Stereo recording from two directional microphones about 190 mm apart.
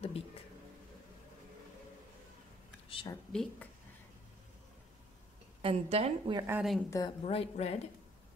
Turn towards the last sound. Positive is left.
turn(degrees=35)  # may be behind; listen again after turning